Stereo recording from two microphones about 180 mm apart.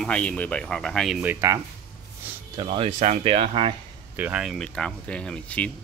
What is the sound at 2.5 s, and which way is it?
Speech, 30° right (ahead or behind).